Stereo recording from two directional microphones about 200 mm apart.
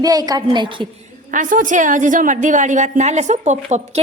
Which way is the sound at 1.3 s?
40° right (ahead or behind).